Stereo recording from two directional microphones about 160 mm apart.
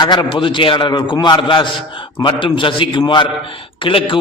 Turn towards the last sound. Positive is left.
turn(degrees=35)  # may be behind; listen again after turning